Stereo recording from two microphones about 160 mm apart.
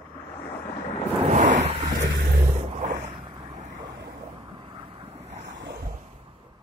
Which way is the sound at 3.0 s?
30° right (ahead or behind).